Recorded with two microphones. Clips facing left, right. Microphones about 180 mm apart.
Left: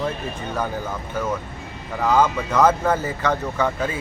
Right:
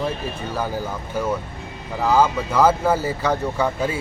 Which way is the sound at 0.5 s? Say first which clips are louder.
Even; 5° right (ahead or behind).